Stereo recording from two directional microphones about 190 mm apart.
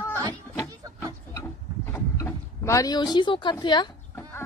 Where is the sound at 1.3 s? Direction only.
15° left (ahead or behind).